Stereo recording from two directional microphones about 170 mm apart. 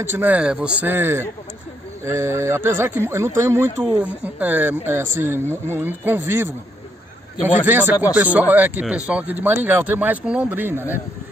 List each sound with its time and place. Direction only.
0.1 s speech: 10° right (ahead or behind)